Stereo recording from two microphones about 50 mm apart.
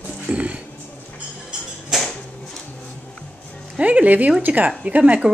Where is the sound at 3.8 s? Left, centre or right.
Right.